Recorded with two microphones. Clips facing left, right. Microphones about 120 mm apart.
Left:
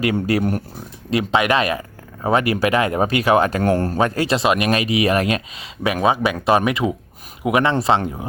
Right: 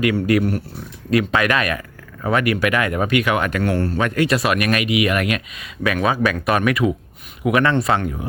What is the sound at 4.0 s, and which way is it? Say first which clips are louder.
Speech: right 2 dB; 30° left (ahead or behind).